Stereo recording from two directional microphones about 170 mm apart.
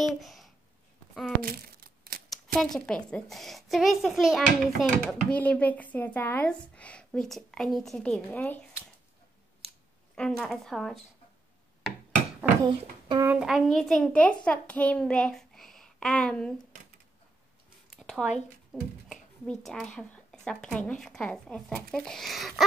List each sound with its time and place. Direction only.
0.0 s speech: centre (ahead or behind)
1.4 s crumpling: 60° right (ahead or behind)
2.2 s a woman's voice: centre (ahead or behind)
10.1 s a woman's voice: 5° left (ahead or behind)
13.1 s a child's voice: 15° right (ahead or behind)
13.4 s a woman's voice: centre (ahead or behind)
17.9 s a sound: centre (ahead or behind)
18.7 s a woman's voice: 5° left (ahead or behind)